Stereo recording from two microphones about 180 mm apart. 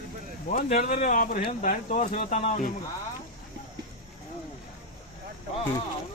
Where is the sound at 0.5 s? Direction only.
45° left (ahead or behind).